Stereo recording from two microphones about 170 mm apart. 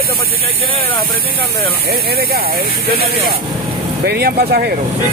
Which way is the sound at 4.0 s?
65° right (ahead or behind).